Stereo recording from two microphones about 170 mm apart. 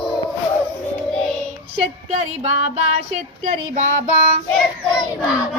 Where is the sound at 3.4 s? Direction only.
40° right (ahead or behind).